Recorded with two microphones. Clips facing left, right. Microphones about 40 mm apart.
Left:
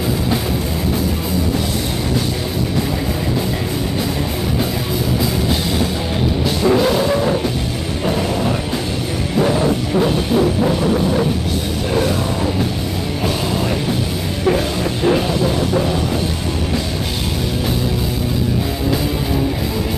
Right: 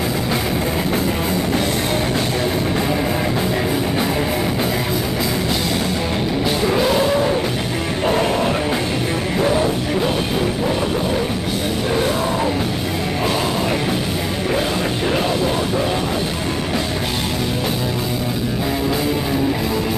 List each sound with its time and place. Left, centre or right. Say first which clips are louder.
6.7 s music: left 2 dB; centre
8.1 s music: right 1 dB; right